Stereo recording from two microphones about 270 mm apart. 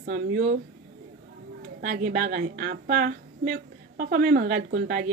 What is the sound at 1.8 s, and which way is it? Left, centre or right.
A woman's voice, right.